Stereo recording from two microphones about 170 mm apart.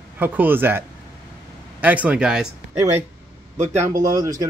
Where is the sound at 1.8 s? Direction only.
10° right (ahead or behind).